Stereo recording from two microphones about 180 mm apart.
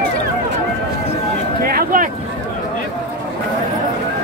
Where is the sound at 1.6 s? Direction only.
55° right (ahead or behind).